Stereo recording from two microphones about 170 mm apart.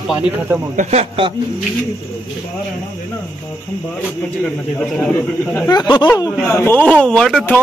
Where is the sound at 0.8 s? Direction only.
40° right (ahead or behind).